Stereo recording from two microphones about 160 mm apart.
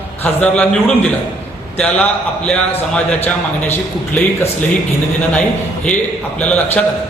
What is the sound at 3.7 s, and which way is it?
Speech, 15° left (ahead or behind).